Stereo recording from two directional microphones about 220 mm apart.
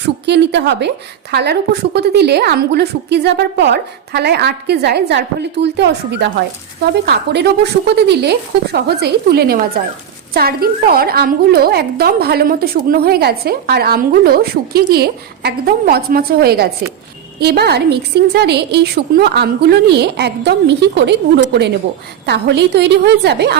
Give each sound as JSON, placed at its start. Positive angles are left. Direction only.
{"t": 0.0, "sound": "a woman's voice", "side_deg": -50}